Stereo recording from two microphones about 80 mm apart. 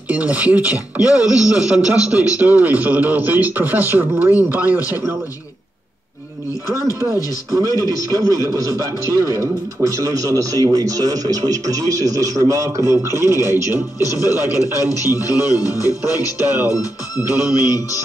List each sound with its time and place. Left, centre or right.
0.1 s speech: centre
1.2 s a man's voice: left
1.5 s a man's voice: centre
7.5 s speech: right
13.9 s a man's voice: left
17.6 s a man's voice: left